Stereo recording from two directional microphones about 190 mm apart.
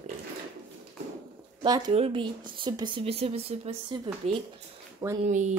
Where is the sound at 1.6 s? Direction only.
25° right (ahead or behind).